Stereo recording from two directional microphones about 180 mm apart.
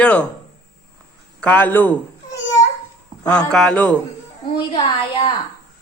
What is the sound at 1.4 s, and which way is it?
Speech, 10° left (ahead or behind).